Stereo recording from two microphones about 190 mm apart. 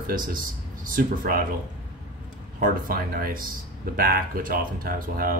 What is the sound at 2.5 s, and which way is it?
Speech, 45° right (ahead or behind).